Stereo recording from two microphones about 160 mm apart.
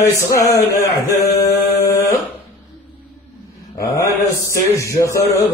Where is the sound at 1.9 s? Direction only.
20° left (ahead or behind).